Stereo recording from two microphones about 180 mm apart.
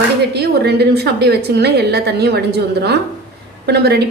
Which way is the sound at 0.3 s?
65° right (ahead or behind).